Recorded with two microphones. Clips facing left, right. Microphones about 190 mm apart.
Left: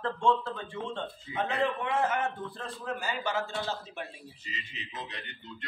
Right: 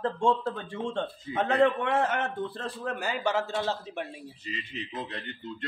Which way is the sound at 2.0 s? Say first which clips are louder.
Right 1 dB; 70° right (ahead or behind).